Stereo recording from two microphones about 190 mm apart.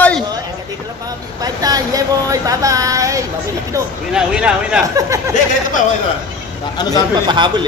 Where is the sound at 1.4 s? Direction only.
20° right (ahead or behind).